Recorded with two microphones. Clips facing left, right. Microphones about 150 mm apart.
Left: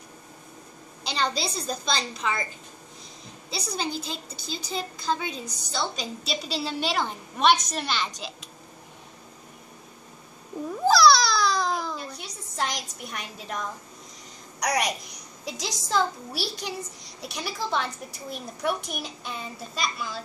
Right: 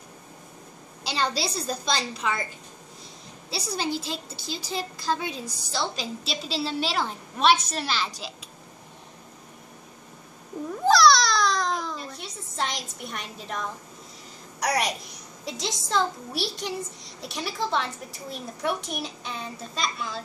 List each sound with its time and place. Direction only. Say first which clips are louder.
1.0 s a woman's voice: right 1 dB; 5° right (ahead or behind)
3.4 s a woman's voice: right 2 dB; 5° right (ahead or behind)
10.9 s a sound: even; 5° left (ahead or behind)
14.6 s a woman's voice: even; centre (ahead or behind)